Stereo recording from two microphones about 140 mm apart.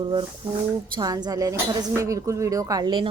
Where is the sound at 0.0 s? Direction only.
35° right (ahead or behind).